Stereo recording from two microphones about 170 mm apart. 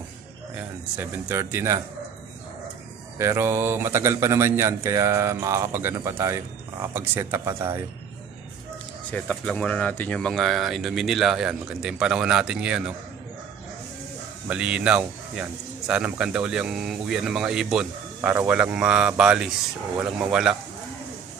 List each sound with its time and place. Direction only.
0.6 s a man's voice: 10° right (ahead or behind)
3.2 s a man's voice: 15° right (ahead or behind)
9.1 s speech: 5° left (ahead or behind)
14.5 s speech: 5° right (ahead or behind)